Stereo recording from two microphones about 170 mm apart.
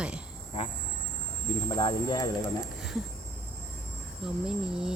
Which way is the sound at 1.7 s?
25° left (ahead or behind).